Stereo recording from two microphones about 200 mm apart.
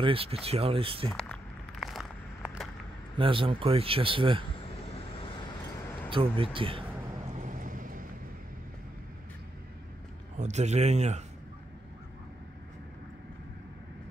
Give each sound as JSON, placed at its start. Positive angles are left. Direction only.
{"t": 0.0, "sound": "speech", "side_deg": -30}
{"t": 1.1, "sound": "a sound", "side_deg": 0}
{"t": 3.2, "sound": "speech", "side_deg": -25}
{"t": 6.0, "sound": "speech", "side_deg": -25}
{"t": 7.3, "sound": "vehicle", "side_deg": -40}
{"t": 10.3, "sound": "speech", "side_deg": -35}